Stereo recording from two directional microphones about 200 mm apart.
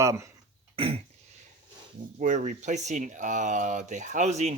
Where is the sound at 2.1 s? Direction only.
40° right (ahead or behind).